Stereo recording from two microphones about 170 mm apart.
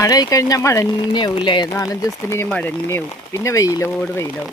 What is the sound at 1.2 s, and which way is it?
Speech, 25° left (ahead or behind).